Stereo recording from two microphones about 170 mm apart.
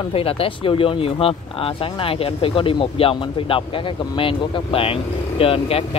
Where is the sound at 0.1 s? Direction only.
35° left (ahead or behind).